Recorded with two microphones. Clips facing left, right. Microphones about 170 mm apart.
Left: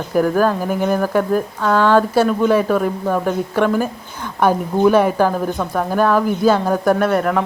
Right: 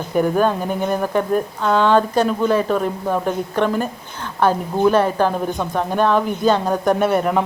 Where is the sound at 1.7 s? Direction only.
20° right (ahead or behind).